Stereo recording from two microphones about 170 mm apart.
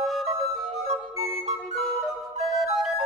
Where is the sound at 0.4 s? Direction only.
Centre (ahead or behind).